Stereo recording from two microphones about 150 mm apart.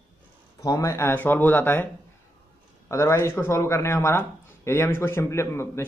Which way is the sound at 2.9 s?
20° left (ahead or behind).